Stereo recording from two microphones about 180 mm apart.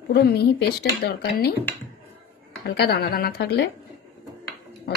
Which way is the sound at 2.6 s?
65° left (ahead or behind).